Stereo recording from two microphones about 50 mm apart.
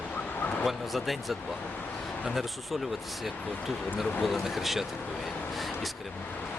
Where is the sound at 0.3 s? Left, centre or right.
Left.